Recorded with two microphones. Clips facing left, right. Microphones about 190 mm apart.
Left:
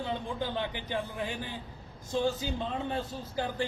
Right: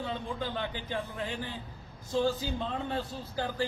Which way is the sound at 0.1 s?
15° left (ahead or behind).